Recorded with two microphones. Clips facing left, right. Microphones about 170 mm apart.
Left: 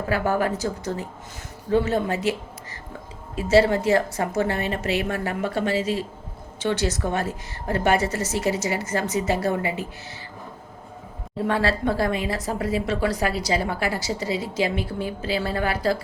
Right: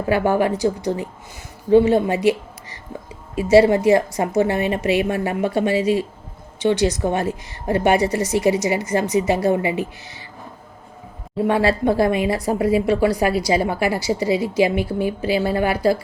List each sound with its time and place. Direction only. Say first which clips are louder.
0.1 s a woman's voice: right 5 dB; 15° right (ahead or behind)
11.4 s speech: right 5 dB; 15° right (ahead or behind)